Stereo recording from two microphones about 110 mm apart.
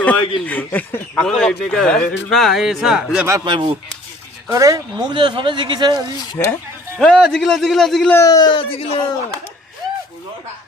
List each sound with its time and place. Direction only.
0.0 s a man's voice: 15° left (ahead or behind); by 3.2 s 5° right (ahead or behind)
3.4 s speech: 45° right (ahead or behind)
4.4 s speech: 30° right (ahead or behind)
7.0 s a man's voice: 5° left (ahead or behind)
8.1 s speech: 30° left (ahead or behind); by 9.0 s 60° left (ahead or behind)